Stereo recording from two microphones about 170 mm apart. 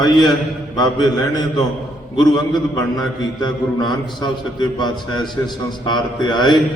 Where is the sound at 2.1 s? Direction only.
25° left (ahead or behind).